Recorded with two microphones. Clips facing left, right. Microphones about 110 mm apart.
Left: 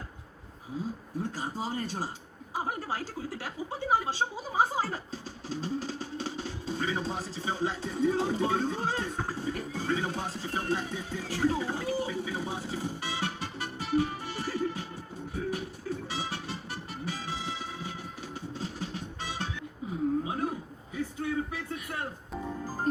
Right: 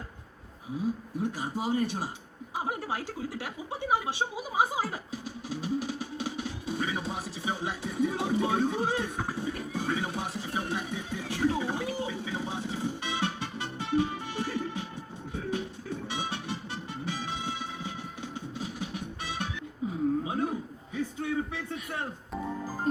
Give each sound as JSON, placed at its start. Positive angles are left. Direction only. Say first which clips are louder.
{"t": 0.8, "sound": "speech", "louder": "right 4 dB", "side_deg": -15}
{"t": 15.3, "sound": "music", "louder": "right 1 dB", "side_deg": -20}
{"t": 20.2, "sound": "a sound", "louder": "right 2 dB", "side_deg": -25}